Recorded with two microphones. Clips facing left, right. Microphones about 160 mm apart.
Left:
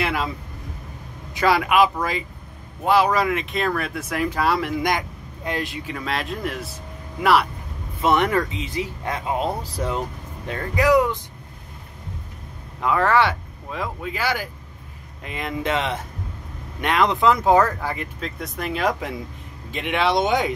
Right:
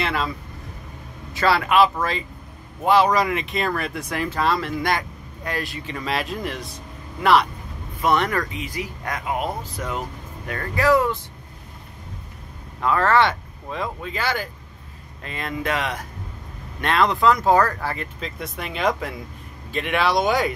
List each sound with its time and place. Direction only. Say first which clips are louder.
0.0 s vehicle: left 1 dB; 10° left (ahead or behind)
1.3 s speech: even; 15° left (ahead or behind)
5.9 s speech: right 1 dB; centre (ahead or behind)
8.0 s speech: left 2 dB; 20° left (ahead or behind)
12.8 s speech: even; 15° left (ahead or behind)
18.2 s speech: left 2 dB; centre (ahead or behind)
19.7 s speech: even; 20° left (ahead or behind)